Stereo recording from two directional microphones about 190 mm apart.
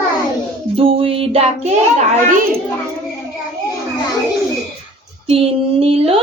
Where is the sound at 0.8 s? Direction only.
30° right (ahead or behind).